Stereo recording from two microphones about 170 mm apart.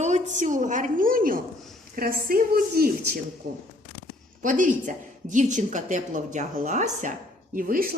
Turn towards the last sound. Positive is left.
turn(degrees=-60)  # may be behind; listen again after turning